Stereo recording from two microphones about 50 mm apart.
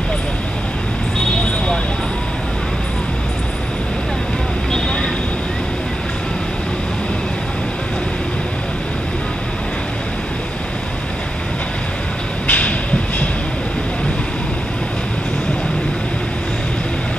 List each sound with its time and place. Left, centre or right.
4.7 s vehicle: centre
12.4 s train: left